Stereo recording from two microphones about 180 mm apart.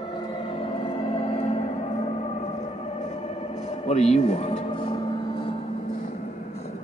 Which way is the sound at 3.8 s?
40° left (ahead or behind).